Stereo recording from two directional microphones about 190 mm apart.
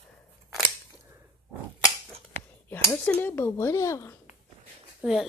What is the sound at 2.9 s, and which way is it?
Speech, 5° left (ahead or behind).